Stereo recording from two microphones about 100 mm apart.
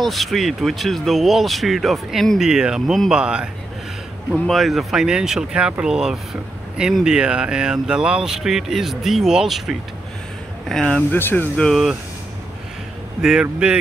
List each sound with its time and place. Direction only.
0.0 s speech: centre (ahead or behind)
4.5 s speech: centre (ahead or behind)
10.7 s speech: 5° left (ahead or behind)
11.1 s speech: 20° left (ahead or behind)
11.6 s speech: centre (ahead or behind)
13.2 s speech: 5° right (ahead or behind)